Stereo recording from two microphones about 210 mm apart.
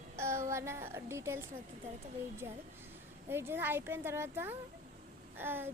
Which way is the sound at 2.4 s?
10° right (ahead or behind).